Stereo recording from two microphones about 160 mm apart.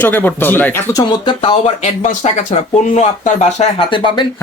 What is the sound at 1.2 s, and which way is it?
Speech, 30° left (ahead or behind).